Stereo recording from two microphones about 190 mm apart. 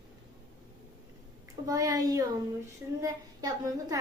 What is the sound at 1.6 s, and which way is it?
A woman's voice, 15° right (ahead or behind).